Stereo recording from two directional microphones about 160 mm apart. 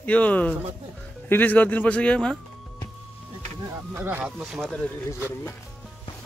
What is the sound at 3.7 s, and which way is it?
Speech, 10° right (ahead or behind).